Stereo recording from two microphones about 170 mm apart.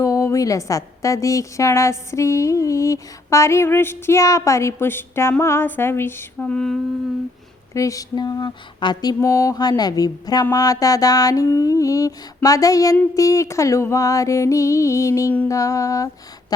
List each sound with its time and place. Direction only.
0.0 s a woman's voice: 20° left (ahead or behind)
7.7 s mantra: 20° left (ahead or behind)